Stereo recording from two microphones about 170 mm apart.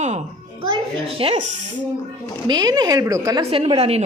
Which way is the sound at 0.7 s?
35° right (ahead or behind).